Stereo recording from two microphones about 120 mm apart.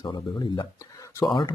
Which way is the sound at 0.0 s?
35° left (ahead or behind).